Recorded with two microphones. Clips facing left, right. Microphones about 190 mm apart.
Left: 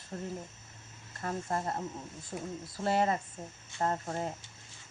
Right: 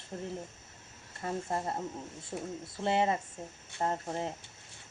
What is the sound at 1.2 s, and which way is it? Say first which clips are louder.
Speech: even; 20° right (ahead or behind).